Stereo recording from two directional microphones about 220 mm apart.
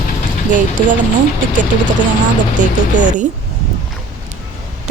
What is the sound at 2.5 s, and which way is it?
Speech, 35° right (ahead or behind).